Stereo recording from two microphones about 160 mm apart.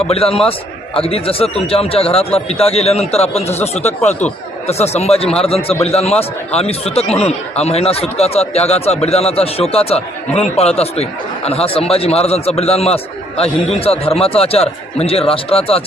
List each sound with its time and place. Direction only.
0.1 s speech: 35° left (ahead or behind)